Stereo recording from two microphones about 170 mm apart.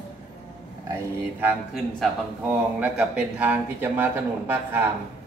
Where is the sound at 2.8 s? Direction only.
10° right (ahead or behind).